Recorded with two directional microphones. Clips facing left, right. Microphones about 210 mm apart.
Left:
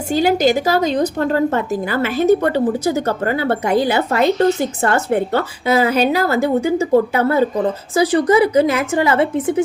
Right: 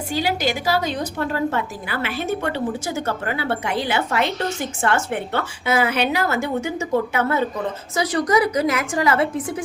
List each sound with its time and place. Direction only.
0.1 s a woman's voice: 45° left (ahead or behind); by 9.6 s 25° left (ahead or behind)